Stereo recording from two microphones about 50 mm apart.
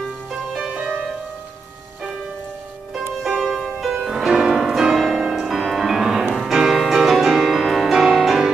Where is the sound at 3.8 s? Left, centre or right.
Centre.